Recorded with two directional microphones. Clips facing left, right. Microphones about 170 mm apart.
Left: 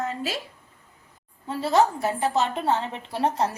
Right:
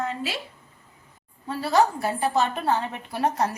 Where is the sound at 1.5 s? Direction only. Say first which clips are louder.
Even; 20° left (ahead or behind).